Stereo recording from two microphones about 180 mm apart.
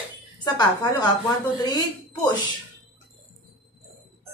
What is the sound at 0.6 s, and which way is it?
Speech, 25° left (ahead or behind).